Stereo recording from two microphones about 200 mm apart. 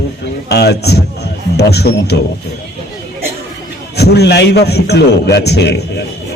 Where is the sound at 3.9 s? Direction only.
55° left (ahead or behind).